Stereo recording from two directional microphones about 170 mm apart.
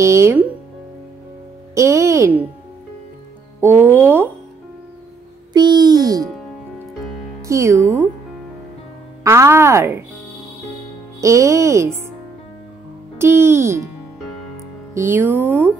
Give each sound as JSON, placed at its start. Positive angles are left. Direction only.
{"t": 0.0, "sound": "speech", "side_deg": -15}
{"t": 1.8, "sound": "speech", "side_deg": -15}
{"t": 3.6, "sound": "speech", "side_deg": -10}
{"t": 5.5, "sound": "a sound", "side_deg": -25}
{"t": 7.4, "sound": "speech", "side_deg": -15}
{"t": 9.2, "sound": "speech", "side_deg": -15}
{"t": 11.1, "sound": "speech", "side_deg": -20}
{"t": 13.2, "sound": "speech", "side_deg": -15}
{"t": 15.0, "sound": "speech", "side_deg": -15}